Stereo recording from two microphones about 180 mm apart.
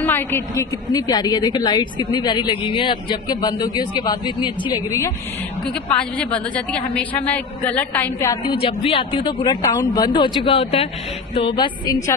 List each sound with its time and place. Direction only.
0.0 s a woman's voice: 15° left (ahead or behind)
5.7 s a woman's voice: 5° left (ahead or behind)
8.5 s a woman's voice: 30° left (ahead or behind)